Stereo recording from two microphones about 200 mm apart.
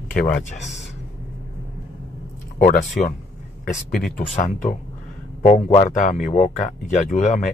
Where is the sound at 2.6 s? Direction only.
40° left (ahead or behind).